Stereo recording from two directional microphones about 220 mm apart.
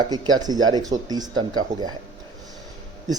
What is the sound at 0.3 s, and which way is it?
Speech, 15° right (ahead or behind).